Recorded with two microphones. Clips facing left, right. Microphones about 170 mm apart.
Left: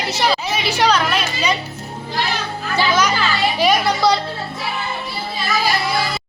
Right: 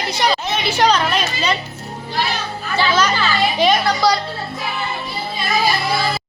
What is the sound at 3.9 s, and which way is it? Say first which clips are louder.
Speech: even; 25° left (ahead or behind).